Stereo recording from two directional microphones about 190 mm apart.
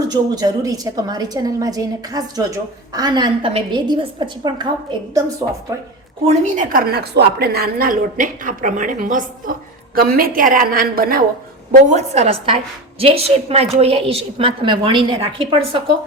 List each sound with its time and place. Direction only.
0.1 s a woman's voice: 20° right (ahead or behind)
6.2 s a woman's voice: 40° right (ahead or behind)
11.7 s a woman's voice: 40° right (ahead or behind)